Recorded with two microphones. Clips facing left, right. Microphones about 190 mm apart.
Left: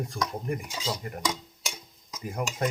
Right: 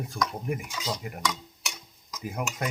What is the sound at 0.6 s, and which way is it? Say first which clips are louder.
Speech: even; 30° left (ahead or behind).